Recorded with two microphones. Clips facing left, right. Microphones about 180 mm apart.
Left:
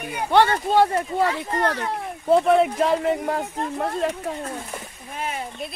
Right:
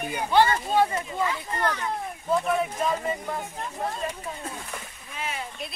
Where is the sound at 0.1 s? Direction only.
65° left (ahead or behind).